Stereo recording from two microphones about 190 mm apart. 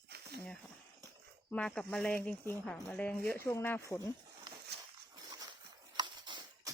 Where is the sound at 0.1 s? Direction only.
60° right (ahead or behind).